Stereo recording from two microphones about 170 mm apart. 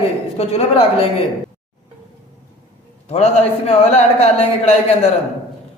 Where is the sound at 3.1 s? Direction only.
40° left (ahead or behind).